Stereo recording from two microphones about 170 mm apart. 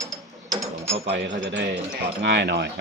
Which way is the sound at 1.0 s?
90° right.